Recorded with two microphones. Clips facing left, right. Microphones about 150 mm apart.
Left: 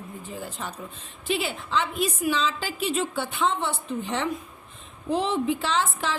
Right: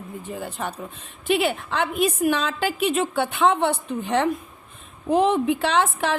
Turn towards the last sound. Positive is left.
turn(degrees=-60)  # may be behind; listen again after turning